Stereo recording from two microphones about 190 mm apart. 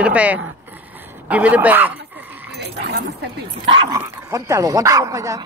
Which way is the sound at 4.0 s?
15° right (ahead or behind).